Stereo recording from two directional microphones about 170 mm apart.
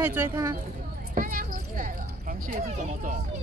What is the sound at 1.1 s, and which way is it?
Speech, 55° right (ahead or behind).